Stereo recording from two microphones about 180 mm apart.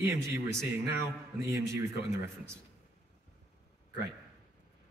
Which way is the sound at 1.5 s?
15° right (ahead or behind).